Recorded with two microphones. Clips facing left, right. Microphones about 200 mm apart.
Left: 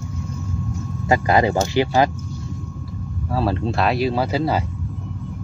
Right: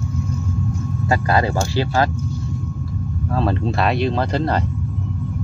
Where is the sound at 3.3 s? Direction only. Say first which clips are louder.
Even; 5° left (ahead or behind).